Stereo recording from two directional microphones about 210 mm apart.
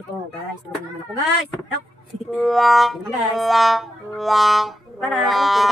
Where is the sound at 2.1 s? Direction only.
Centre (ahead or behind).